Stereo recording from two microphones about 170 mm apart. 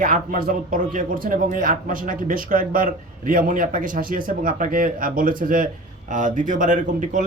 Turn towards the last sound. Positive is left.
turn(degrees=-50)  # may be behind; listen again after turning